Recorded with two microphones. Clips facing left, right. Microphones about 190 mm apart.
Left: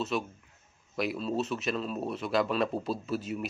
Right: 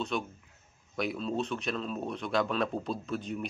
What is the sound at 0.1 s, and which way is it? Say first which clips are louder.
Speech: left 2 dB; 5° left (ahead or behind).